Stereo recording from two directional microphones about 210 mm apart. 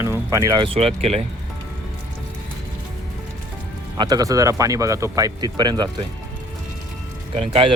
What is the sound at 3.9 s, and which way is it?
Speech, 20° right (ahead or behind).